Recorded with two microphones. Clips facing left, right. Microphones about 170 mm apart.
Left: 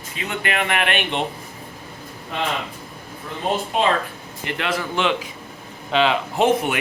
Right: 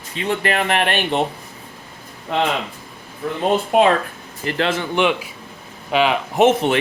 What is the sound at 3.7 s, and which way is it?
Speech, 55° right (ahead or behind).